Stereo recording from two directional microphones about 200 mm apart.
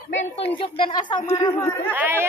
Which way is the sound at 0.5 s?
25° left (ahead or behind).